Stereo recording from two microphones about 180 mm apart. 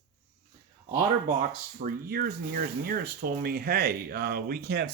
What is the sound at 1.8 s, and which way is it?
Speech, 55° right (ahead or behind).